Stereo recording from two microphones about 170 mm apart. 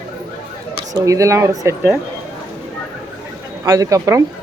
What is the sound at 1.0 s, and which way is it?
Speech, 20° right (ahead or behind).